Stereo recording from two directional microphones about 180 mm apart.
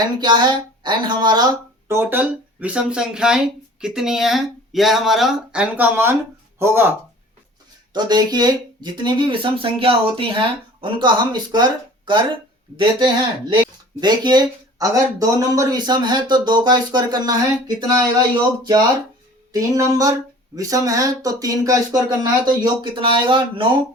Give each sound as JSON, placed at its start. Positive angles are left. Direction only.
{"t": 0.2, "sound": "speech", "side_deg": -25}
{"t": 7.9, "sound": "speech", "side_deg": -25}
{"t": 19.5, "sound": "speech", "side_deg": -20}